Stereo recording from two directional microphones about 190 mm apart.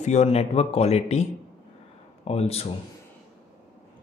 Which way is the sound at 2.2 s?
35° left (ahead or behind).